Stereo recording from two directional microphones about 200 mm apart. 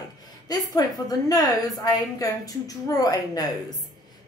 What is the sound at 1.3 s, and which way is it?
A woman's voice, 20° left (ahead or behind).